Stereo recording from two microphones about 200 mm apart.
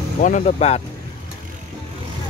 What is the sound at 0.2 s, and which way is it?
Speech, 35° left (ahead or behind).